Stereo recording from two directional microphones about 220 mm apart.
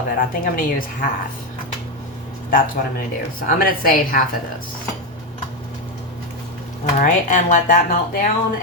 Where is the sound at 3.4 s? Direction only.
40° left (ahead or behind).